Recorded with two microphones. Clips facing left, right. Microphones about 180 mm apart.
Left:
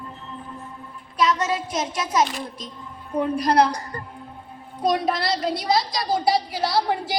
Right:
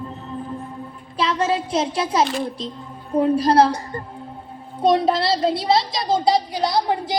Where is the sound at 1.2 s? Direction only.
30° right (ahead or behind).